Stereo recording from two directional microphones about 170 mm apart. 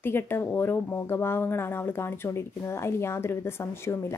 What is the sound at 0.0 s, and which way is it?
Speech, 10° left (ahead or behind).